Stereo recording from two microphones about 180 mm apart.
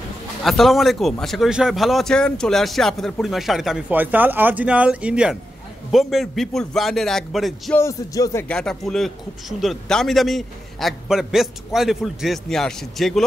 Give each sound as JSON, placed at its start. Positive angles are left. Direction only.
{"t": 0.4, "sound": "a man's voice", "side_deg": 0}
{"t": 7.7, "sound": "music", "side_deg": 15}
{"t": 8.5, "sound": "a man's voice", "side_deg": 0}